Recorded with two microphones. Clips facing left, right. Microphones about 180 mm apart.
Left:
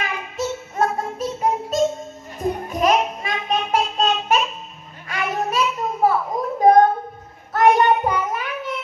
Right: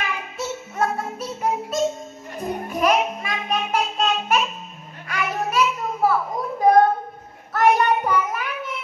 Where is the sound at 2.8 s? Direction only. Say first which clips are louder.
Left 1 dB; 30° left (ahead or behind).